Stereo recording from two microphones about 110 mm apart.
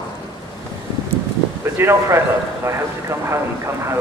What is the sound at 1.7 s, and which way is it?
Speech, 25° right (ahead or behind).